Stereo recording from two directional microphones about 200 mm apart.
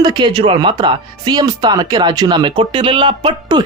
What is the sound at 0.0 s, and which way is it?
Speech, 20° right (ahead or behind).